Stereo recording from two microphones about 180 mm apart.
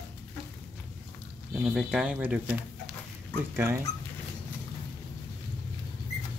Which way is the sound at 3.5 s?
15° right (ahead or behind).